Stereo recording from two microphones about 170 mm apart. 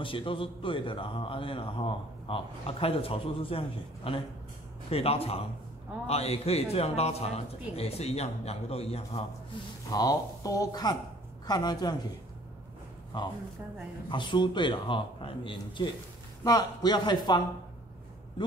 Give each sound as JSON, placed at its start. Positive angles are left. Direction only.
{"t": 0.0, "sound": "speech", "side_deg": 30}
{"t": 9.8, "sound": "a man's voice", "side_deg": 20}
{"t": 13.1, "sound": "a man's voice", "side_deg": 25}